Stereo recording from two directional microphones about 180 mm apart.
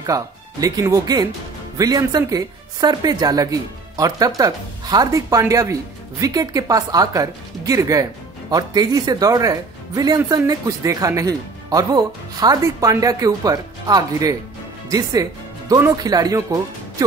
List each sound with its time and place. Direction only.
0.0 s speech: 20° right (ahead or behind)